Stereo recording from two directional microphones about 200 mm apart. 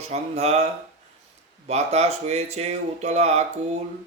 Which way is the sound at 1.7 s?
35° right (ahead or behind).